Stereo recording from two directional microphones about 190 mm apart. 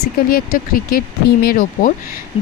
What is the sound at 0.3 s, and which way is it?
A woman's voice, 50° left (ahead or behind).